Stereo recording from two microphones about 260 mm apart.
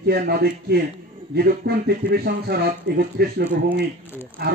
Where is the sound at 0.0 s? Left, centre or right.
Right.